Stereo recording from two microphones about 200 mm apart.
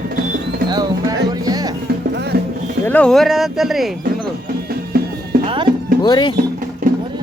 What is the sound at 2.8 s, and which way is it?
Speech, 5° left (ahead or behind).